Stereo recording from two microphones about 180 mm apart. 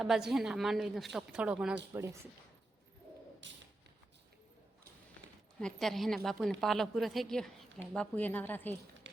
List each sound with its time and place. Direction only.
0.0 s a woman's voice: centre (ahead or behind)
3.4 s a sound: 90° right
5.5 s a woman's voice: 5° left (ahead or behind)